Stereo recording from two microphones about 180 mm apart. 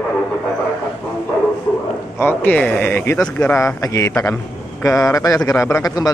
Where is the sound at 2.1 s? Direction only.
10° left (ahead or behind).